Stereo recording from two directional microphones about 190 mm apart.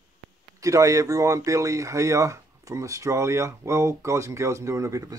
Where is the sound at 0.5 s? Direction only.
15° right (ahead or behind).